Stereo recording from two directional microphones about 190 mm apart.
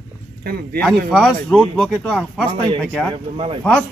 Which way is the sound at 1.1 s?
5° left (ahead or behind).